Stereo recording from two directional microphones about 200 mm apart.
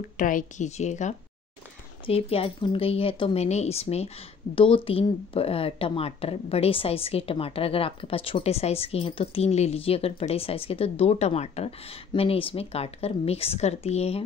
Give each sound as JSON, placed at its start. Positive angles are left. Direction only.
{"t": 0.2, "sound": "speech", "side_deg": 40}